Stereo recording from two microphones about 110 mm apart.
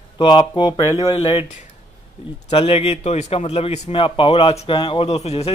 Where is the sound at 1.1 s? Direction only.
60° left (ahead or behind).